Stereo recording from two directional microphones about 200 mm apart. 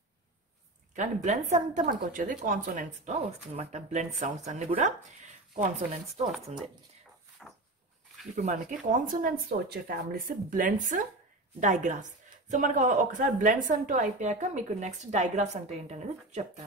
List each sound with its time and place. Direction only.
0.9 s speech: 35° right (ahead or behind)
8.4 s speech: 40° right (ahead or behind)